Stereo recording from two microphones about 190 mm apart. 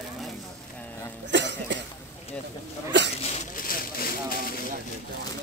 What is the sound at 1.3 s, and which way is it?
Cough, 70° right (ahead or behind).